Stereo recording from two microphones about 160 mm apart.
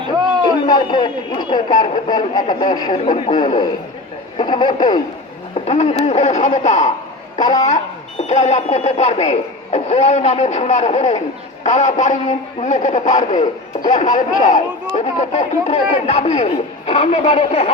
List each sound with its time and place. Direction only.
0.4 s a man's voice: 25° left (ahead or behind)
5.5 s speech: 45° left (ahead or behind)
8.3 s speech: 45° left (ahead or behind)